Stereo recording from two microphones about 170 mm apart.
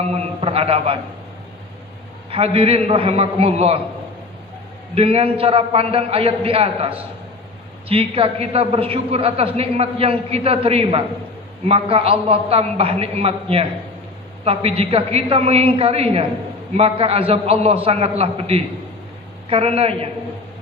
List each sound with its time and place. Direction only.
0.0 s a sound: 35° right (ahead or behind)
2.3 s a man's voice: 35° right (ahead or behind)
4.9 s a man's voice: 35° right (ahead or behind)